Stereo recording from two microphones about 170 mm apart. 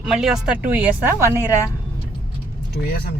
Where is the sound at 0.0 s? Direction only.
Centre (ahead or behind).